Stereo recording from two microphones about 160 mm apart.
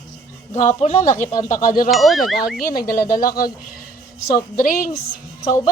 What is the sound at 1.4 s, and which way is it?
Speech, 55° left (ahead or behind).